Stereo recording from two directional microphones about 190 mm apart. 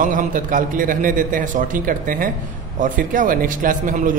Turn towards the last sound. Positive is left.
turn(degrees=-45)  # may be behind; listen again after turning